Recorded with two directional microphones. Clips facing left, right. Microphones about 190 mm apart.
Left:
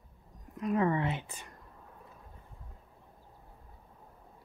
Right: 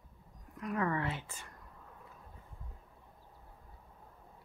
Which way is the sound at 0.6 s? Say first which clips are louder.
Left 5 dB; 20° left (ahead or behind).